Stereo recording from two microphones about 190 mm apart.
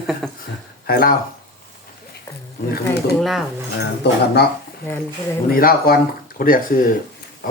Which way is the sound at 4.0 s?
60° left (ahead or behind).